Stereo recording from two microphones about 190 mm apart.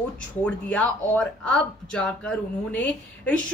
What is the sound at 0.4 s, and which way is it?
A woman's voice, 5° left (ahead or behind).